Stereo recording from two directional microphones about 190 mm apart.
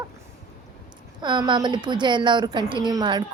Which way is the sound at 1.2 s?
25° right (ahead or behind).